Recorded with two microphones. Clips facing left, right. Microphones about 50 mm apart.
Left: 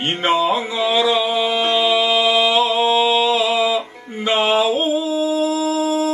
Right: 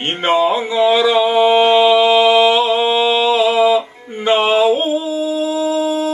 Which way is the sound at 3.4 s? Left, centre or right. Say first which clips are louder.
Right 4 dB; right.